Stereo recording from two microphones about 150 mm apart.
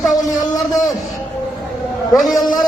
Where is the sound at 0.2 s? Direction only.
25° left (ahead or behind).